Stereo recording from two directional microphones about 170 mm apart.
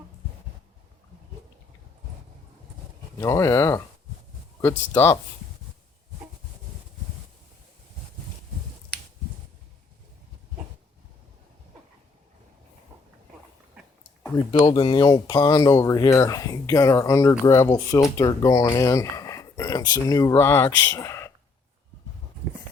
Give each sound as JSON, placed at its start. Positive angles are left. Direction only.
{"t": 3.2, "sound": "speech", "side_deg": 15}
{"t": 14.6, "sound": "speech", "side_deg": 30}